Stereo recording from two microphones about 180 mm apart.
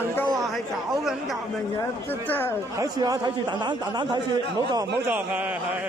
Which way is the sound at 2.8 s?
20° right (ahead or behind).